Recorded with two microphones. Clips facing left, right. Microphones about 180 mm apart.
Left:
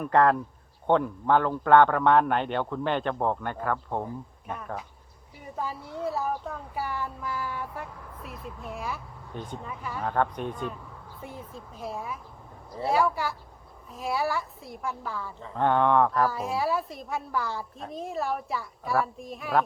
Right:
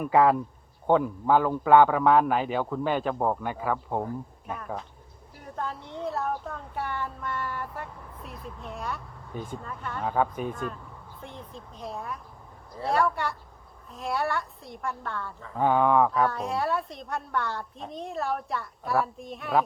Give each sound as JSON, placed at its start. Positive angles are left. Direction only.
{"t": 0.0, "sound": "a woman's voice", "side_deg": -5}